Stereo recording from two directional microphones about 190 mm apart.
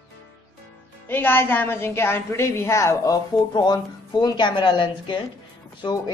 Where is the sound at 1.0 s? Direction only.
10° left (ahead or behind).